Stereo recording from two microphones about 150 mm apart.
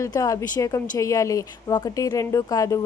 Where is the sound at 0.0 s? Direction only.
25° left (ahead or behind).